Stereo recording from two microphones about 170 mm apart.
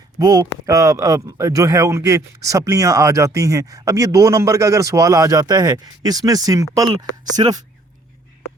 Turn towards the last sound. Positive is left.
turn(degrees=-25)  # may be behind; listen again after turning